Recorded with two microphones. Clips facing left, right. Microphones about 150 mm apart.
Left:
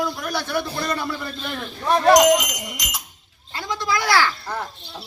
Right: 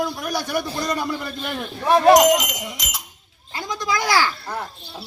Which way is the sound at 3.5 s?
20° right (ahead or behind).